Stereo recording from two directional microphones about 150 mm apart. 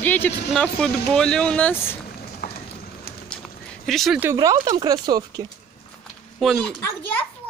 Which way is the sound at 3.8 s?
Centre (ahead or behind).